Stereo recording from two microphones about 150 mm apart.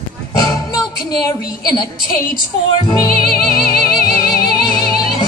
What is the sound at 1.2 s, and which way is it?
Speech, 25° left (ahead or behind).